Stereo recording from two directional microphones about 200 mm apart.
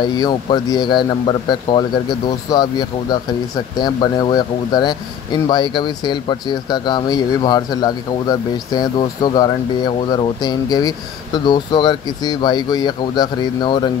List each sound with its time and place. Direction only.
0.0 s speech: 20° left (ahead or behind)